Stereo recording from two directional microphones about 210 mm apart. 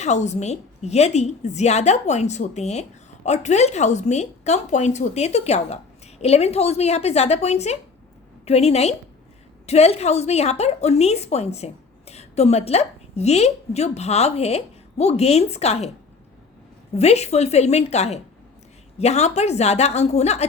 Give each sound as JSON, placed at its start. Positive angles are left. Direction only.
{"t": 0.0, "sound": "a woman's voice", "side_deg": 35}
{"t": 16.9, "sound": "a woman's voice", "side_deg": 30}